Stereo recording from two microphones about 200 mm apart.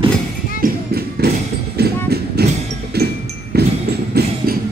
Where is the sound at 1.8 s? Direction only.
55° right (ahead or behind).